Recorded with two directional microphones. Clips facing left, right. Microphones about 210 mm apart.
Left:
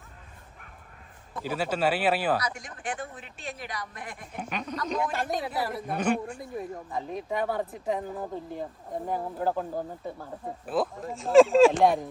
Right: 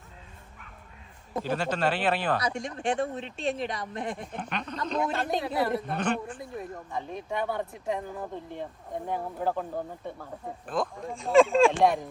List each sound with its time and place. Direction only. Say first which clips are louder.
1.5 s a man's voice: left 1 dB; 5° left (ahead or behind)
2.4 s speech: right 5 dB; 25° right (ahead or behind)
4.4 s a man's voice: left 1 dB; 10° left (ahead or behind)
5.0 s speech: right 1 dB; 25° right (ahead or behind)
5.8 s a man's voice: left 2 dB; 10° left (ahead or behind)